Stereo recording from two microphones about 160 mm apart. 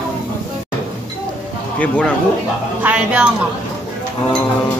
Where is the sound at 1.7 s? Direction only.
5° left (ahead or behind).